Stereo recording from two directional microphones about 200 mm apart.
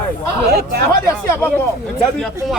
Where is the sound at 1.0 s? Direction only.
15° left (ahead or behind).